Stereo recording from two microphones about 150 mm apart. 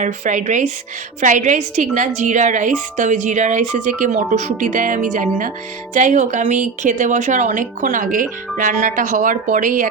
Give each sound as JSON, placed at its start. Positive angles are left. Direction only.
{"t": 0.0, "sound": "a woman's voice", "side_deg": -55}